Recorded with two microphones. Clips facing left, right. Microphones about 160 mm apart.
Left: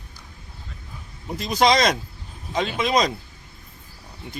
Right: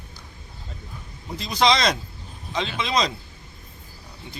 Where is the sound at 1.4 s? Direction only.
45° left (ahead or behind).